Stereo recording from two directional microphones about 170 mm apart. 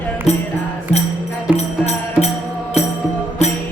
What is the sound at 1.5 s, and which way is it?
Music, 40° left (ahead or behind).